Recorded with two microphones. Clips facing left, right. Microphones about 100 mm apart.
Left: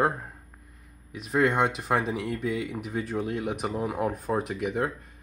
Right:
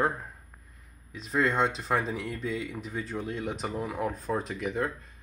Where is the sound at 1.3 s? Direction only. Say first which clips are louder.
Left 3 dB; 30° left (ahead or behind).